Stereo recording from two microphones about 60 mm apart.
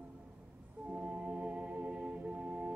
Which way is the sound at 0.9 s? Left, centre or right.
Right.